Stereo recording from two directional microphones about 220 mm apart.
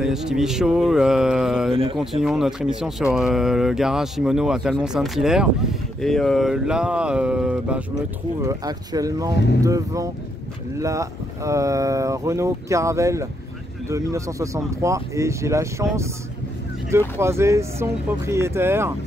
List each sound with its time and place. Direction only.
0.0 s speech: centre (ahead or behind)
1.7 s speech: 25° right (ahead or behind)
2.2 s speech: centre (ahead or behind)
8.4 s speech: 15° right (ahead or behind)
9.3 s speech: 50° left (ahead or behind)
9.6 s speech: 15° right (ahead or behind)
17.2 s speech: 10° right (ahead or behind)